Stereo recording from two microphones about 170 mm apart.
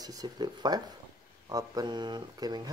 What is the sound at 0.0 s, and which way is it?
Speech, 25° right (ahead or behind).